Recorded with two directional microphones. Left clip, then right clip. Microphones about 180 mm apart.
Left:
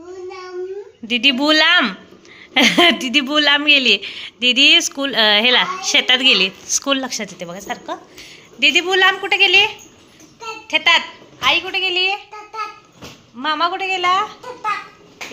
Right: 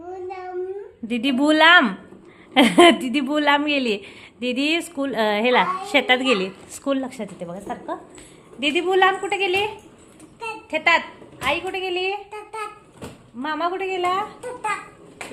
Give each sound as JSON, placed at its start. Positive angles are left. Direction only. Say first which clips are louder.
{"t": 1.0, "sound": "speech", "louder": "left 6 dB", "side_deg": -10}
{"t": 13.4, "sound": "speech", "louder": "left 6 dB", "side_deg": 0}